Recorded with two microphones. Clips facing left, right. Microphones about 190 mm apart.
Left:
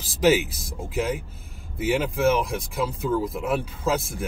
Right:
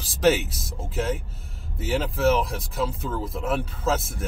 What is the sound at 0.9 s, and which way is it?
Speech, 10° left (ahead or behind).